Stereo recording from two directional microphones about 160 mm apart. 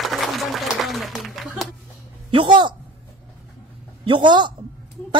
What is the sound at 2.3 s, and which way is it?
Speech, 30° right (ahead or behind).